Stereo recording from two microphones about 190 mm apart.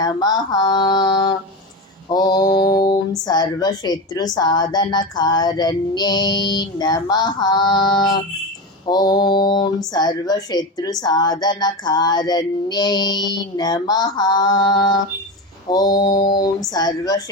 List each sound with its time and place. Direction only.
0.0 s speech: 20° left (ahead or behind)